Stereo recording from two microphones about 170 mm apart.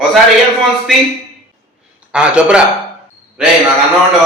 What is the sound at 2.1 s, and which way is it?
Speech, 5° right (ahead or behind).